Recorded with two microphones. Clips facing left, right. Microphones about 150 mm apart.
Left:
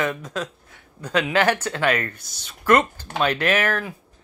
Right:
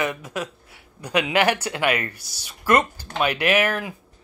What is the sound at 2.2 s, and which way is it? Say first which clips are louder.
Speech: even; 55° left (ahead or behind).